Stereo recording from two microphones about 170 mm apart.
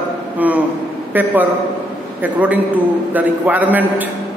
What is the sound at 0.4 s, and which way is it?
A man's voice, 10° right (ahead or behind).